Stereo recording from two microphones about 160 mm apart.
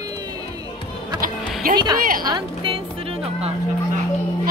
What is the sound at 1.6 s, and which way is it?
Speech, 65° right (ahead or behind).